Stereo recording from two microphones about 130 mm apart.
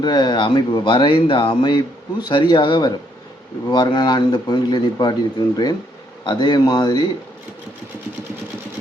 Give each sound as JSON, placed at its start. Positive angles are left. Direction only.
{"t": 0.0, "sound": "a man's voice", "side_deg": 35}